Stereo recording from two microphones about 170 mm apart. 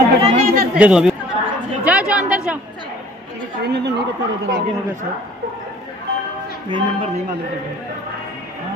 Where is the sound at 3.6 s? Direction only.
85° right.